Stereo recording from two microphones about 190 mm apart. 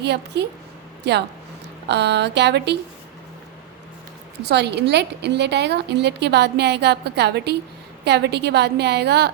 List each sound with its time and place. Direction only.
0.0 s a woman's voice: 60° right (ahead or behind)
1.9 s a woman's voice: 65° right (ahead or behind)
4.4 s a woman's voice: 60° right (ahead or behind)